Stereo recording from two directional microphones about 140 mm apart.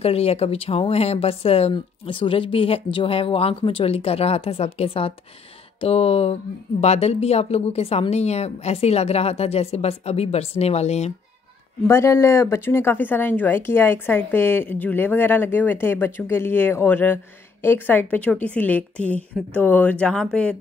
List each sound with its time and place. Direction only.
0.0 s speech: 45° left (ahead or behind)
11.9 s speech: 20° left (ahead or behind); by 20.5 s 5° left (ahead or behind)